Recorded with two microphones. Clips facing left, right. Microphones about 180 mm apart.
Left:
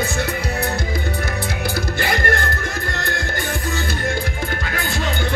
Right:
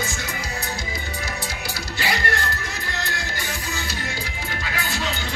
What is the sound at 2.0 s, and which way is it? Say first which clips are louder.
Music: left 3 dB; 50° left (ahead or behind).